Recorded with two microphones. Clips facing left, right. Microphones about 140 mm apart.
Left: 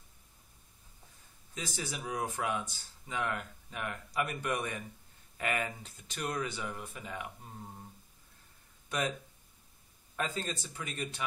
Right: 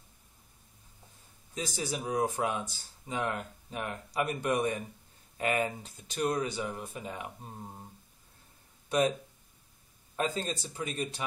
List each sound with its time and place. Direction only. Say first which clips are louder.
1.5 s speech: right 5 dB; 30° right (ahead or behind)
8.8 s a sound: right 7 dB; 30° right (ahead or behind)
10.1 s speech: right 4 dB; 30° right (ahead or behind)